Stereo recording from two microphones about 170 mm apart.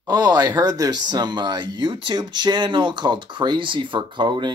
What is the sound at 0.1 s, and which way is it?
Speech, 25° right (ahead or behind).